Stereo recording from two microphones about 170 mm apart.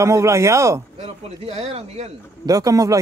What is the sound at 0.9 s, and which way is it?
Speech, 35° right (ahead or behind).